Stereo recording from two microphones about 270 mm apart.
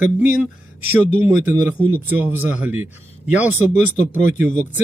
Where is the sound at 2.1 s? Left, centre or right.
Centre.